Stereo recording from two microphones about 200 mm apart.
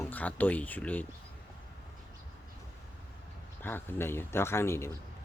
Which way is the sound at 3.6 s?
10° left (ahead or behind).